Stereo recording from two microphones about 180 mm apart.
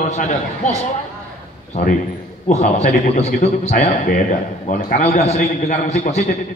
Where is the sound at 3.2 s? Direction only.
35° left (ahead or behind).